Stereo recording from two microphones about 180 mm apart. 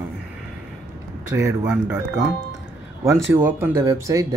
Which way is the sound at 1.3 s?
10° right (ahead or behind).